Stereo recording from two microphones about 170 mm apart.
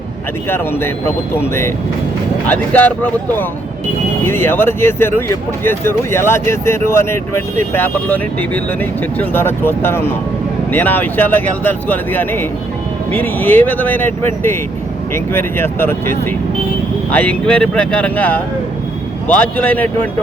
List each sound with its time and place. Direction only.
0.5 s speech: 15° left (ahead or behind)